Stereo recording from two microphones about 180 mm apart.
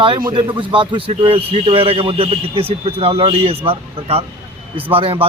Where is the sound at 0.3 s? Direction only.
25° right (ahead or behind).